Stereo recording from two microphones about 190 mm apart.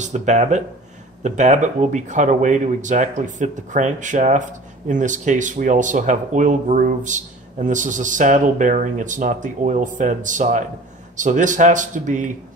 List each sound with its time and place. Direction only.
0.0 s speech: 40° right (ahead or behind)